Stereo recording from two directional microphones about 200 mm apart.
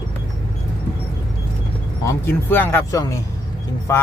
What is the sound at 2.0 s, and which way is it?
Speech, 10° left (ahead or behind).